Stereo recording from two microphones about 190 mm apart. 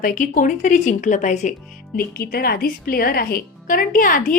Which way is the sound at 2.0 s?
50° left (ahead or behind).